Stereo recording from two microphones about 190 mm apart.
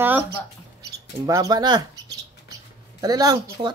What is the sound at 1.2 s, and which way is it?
Speech, 20° right (ahead or behind).